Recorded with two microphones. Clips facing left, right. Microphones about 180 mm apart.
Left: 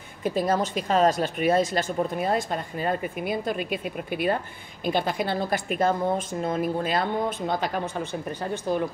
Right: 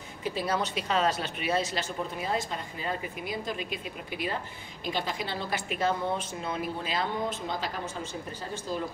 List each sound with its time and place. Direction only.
0.2 s speech: 45° left (ahead or behind)